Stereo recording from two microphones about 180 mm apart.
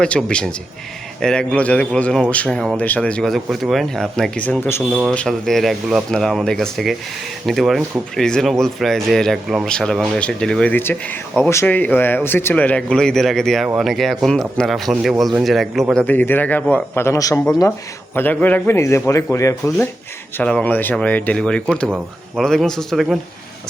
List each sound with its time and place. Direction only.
0.0 s speech: 5° left (ahead or behind)